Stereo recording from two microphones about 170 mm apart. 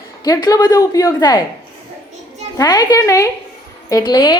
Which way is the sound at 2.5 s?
25° left (ahead or behind).